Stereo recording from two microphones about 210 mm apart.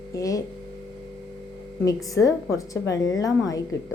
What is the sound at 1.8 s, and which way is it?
A woman's voice, 15° left (ahead or behind).